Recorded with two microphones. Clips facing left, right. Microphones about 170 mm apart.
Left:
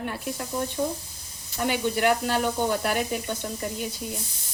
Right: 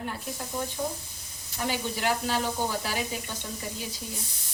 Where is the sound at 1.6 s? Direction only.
60° left (ahead or behind).